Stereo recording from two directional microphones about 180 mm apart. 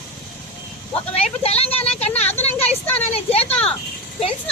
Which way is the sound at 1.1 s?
35° left (ahead or behind).